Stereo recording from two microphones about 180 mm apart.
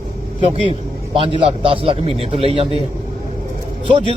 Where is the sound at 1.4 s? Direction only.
30° right (ahead or behind).